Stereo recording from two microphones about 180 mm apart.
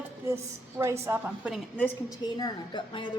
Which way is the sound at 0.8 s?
15° right (ahead or behind).